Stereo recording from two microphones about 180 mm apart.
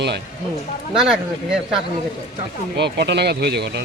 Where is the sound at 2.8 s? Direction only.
70° right (ahead or behind).